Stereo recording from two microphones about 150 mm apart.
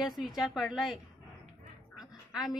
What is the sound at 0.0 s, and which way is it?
Speech, centre (ahead or behind).